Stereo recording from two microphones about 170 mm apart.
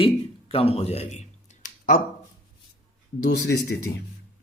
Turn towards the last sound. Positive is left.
turn(degrees=75)  # may be behind; listen again after turning